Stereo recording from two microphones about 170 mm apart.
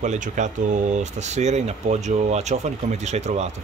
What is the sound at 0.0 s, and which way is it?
Speech, 45° right (ahead or behind).